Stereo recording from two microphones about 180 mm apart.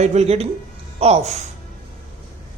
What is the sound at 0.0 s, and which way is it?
A man's voice, 40° right (ahead or behind).